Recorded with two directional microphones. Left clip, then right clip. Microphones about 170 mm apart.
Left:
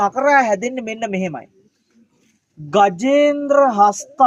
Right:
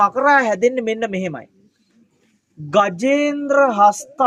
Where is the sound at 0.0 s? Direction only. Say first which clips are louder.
Even; 35° right (ahead or behind).